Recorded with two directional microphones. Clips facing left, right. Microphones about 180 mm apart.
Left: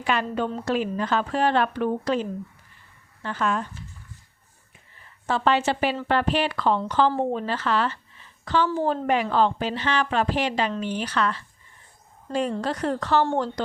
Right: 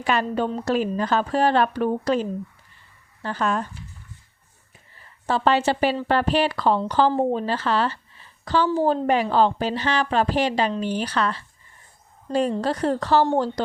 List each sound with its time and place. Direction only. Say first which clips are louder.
0.0 s speech: right 2 dB; 40° right (ahead or behind)
3.2 s speech: right 2 dB; 35° right (ahead or behind)
5.2 s speech: right 2 dB; 35° right (ahead or behind)